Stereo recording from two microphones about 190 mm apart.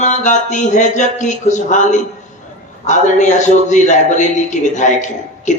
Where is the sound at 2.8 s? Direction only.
40° left (ahead or behind).